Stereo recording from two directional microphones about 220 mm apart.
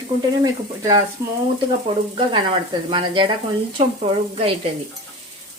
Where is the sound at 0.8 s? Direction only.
15° right (ahead or behind).